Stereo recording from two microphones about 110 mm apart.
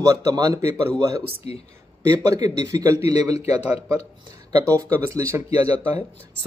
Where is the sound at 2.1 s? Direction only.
35° right (ahead or behind).